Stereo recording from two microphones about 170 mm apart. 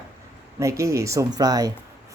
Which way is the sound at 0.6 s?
20° right (ahead or behind).